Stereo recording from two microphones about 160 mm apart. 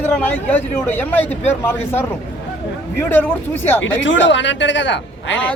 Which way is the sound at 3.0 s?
10° left (ahead or behind).